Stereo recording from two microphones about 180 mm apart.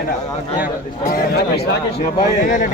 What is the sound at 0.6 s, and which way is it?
A man's voice, 50° left (ahead or behind).